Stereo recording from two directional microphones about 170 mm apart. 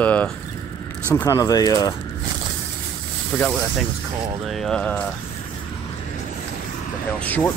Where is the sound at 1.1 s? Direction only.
20° left (ahead or behind).